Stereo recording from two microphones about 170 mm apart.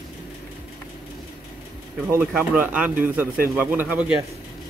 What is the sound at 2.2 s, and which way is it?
Speech, 10° right (ahead or behind).